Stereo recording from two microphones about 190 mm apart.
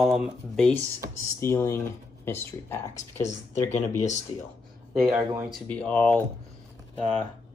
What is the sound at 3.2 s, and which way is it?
Speech, 40° left (ahead or behind).